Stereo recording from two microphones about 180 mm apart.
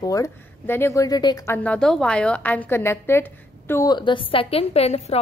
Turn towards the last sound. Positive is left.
turn(degrees=35)  # may be behind; listen again after turning